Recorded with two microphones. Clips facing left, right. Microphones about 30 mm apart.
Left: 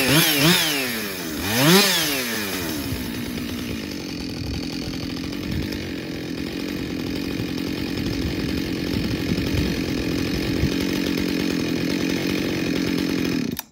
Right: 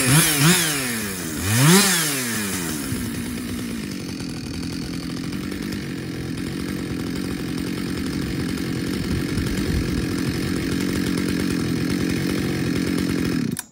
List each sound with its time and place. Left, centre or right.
0.0 s chainsaw: left
8.8 s chainsaw: left
9.3 s chainsaw: left